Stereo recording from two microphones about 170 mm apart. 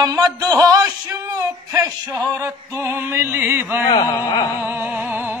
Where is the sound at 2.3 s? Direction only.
15° right (ahead or behind).